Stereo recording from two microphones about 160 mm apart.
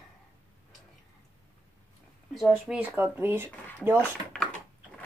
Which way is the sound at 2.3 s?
Centre (ahead or behind).